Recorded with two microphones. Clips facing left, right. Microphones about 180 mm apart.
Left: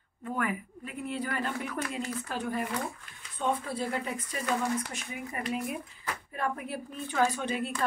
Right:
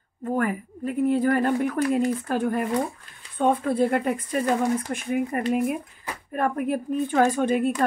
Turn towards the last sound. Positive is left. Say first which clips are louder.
# right 8 dB
turn(degrees=-50)  # may be behind; listen again after turning